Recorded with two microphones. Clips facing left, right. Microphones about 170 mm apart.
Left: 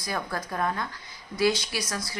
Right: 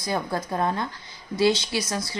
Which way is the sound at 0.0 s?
25° right (ahead or behind).